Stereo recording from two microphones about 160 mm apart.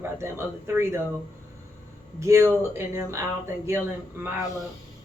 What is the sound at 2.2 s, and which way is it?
Speech, 15° right (ahead or behind).